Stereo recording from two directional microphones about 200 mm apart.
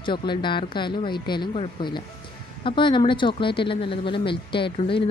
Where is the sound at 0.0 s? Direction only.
25° left (ahead or behind).